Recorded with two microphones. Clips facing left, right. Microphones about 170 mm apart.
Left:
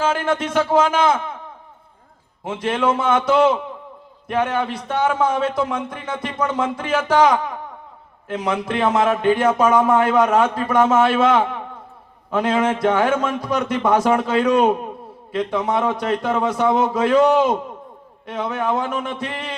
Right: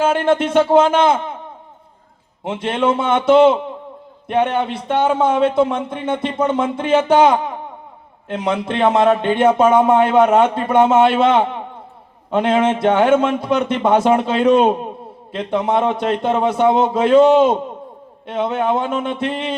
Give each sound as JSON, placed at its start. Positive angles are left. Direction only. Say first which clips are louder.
{"t": 0.0, "sound": "a man's voice", "louder": "right 5 dB", "side_deg": -30}
{"t": 2.4, "sound": "a man's voice", "louder": "right 2 dB", "side_deg": -25}